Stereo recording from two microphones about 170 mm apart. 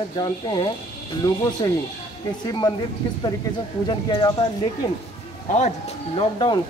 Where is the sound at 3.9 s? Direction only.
25° left (ahead or behind).